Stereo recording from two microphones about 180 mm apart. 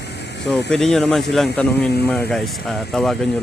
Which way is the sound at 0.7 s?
Centre (ahead or behind).